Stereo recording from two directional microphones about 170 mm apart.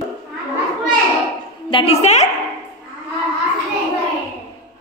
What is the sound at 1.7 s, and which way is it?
Speech, 35° left (ahead or behind).